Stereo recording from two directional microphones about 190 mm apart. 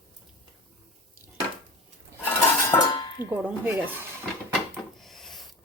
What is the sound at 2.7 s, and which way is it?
Dishes, 25° left (ahead or behind).